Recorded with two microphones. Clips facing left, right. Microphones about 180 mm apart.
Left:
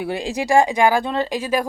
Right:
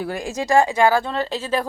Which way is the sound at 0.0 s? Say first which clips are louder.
Left 2 dB; 20° left (ahead or behind).